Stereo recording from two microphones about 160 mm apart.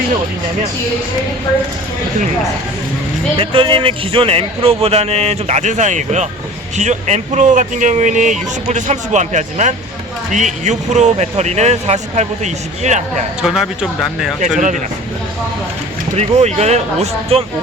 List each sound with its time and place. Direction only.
3.3 s speech: 35° right (ahead or behind)
13.4 s speech: 5° right (ahead or behind)
14.4 s speech: 50° right (ahead or behind)
16.1 s speech: 45° right (ahead or behind)